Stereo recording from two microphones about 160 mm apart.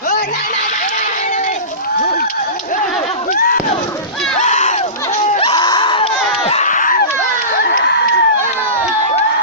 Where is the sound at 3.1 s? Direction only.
40° left (ahead or behind).